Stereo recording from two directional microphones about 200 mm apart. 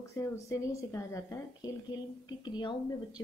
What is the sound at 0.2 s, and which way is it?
A woman's voice, 15° left (ahead or behind).